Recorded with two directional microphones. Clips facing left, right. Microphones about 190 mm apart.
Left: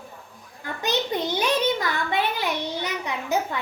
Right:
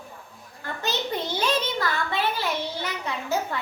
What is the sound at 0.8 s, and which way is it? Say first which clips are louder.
A child's voice: left 3 dB; 15° left (ahead or behind).